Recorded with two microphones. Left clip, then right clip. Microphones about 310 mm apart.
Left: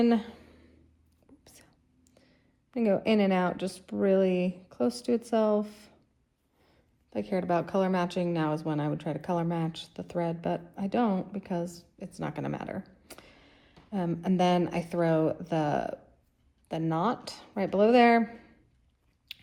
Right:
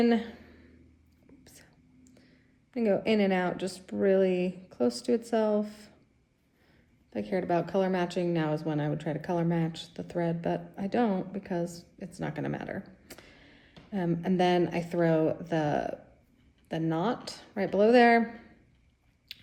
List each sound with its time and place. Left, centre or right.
0.0 s a sound: centre
2.0 s speech: centre
7.1 s speech: centre